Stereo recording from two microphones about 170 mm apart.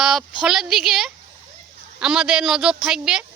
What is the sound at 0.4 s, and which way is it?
A woman's voice, centre (ahead or behind).